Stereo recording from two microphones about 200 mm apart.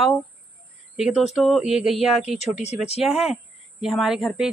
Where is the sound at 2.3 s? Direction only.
35° left (ahead or behind).